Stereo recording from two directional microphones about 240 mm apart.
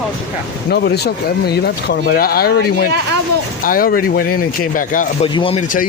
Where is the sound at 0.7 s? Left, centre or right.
Left.